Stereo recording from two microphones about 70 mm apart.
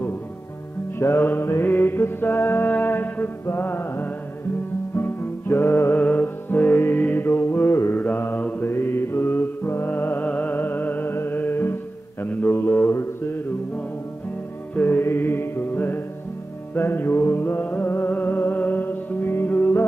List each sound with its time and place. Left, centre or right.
0.9 s mantra: left
4.9 s music: left
5.9 s mantra: left
8.0 s mantra: left
8.6 s music: left
12.3 s mantra: left
14.8 s music: left